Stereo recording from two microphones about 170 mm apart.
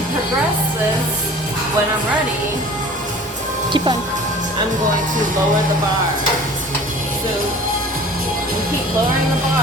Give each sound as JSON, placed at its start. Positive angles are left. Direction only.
{"t": 3.7, "sound": "speech", "side_deg": -25}